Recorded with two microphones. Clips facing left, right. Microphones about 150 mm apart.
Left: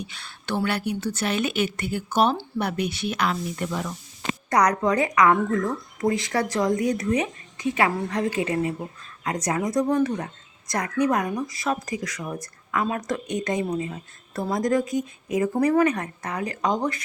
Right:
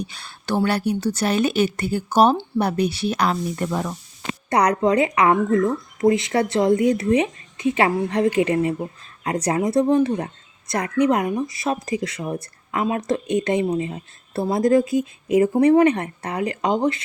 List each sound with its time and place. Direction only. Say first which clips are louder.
0.0 s a woman's voice: right 5 dB; 40° right (ahead or behind)
4.4 s a woman's voice: right 3 dB; 25° right (ahead or behind)